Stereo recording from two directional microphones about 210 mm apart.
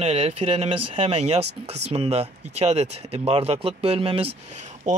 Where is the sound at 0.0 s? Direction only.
30° right (ahead or behind).